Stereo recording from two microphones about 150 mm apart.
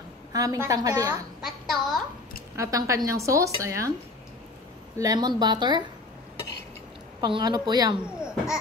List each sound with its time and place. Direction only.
0.3 s a woman's voice: 25° right (ahead or behind)
1.4 s a sound: centre (ahead or behind)
2.5 s a woman's voice: 20° right (ahead or behind)
4.9 s a woman's voice: 25° right (ahead or behind)
7.2 s a woman's voice: 30° right (ahead or behind)